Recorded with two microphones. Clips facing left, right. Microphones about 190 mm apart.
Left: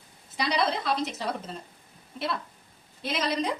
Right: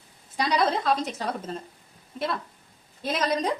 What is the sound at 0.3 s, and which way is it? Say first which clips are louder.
Speech: right 3 dB; 45° right (ahead or behind).